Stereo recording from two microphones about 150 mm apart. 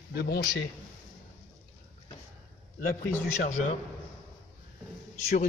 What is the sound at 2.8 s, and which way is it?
Speech, 75° left (ahead or behind).